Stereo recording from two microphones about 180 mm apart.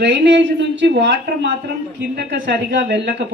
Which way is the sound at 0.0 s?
75° right (ahead or behind).